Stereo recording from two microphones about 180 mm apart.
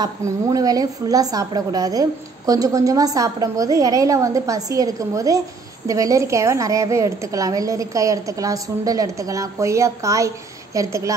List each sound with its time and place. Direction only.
0.0 s a woman's voice: 20° right (ahead or behind)